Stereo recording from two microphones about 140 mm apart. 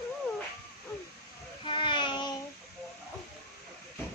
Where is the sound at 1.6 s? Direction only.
35° left (ahead or behind).